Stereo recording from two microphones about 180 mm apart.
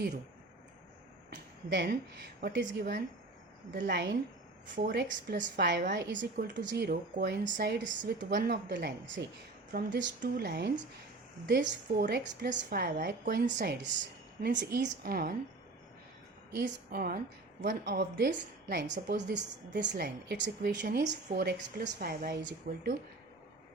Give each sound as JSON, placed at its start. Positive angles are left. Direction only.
{"t": 1.3, "sound": "a woman's voice", "side_deg": -70}
{"t": 5.0, "sound": "a woman's voice", "side_deg": -45}
{"t": 5.5, "sound": "a woman's voice", "side_deg": -70}
{"t": 13.6, "sound": "a woman's voice", "side_deg": -75}
{"t": 16.6, "sound": "a woman's voice", "side_deg": -60}